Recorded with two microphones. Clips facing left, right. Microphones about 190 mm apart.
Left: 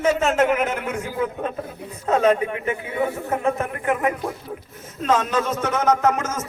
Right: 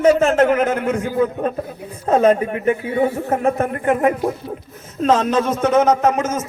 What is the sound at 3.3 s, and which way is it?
A man's voice, 45° right (ahead or behind).